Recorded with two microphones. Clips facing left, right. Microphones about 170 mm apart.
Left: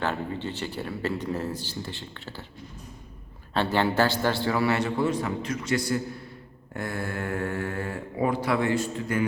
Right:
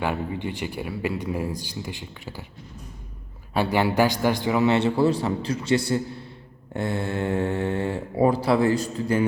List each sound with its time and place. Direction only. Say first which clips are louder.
0.0 s speech: right 2 dB; 10° right (ahead or behind)
3.5 s a man's voice: right 2 dB; 10° right (ahead or behind); by 9.2 s 35° right (ahead or behind)